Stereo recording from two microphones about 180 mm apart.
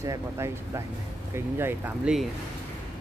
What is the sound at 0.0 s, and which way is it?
Speech, 15° right (ahead or behind).